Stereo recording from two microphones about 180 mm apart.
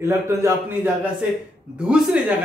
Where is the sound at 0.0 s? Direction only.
15° right (ahead or behind).